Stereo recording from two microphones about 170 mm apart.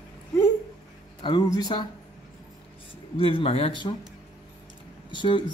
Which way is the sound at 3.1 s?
35° left (ahead or behind).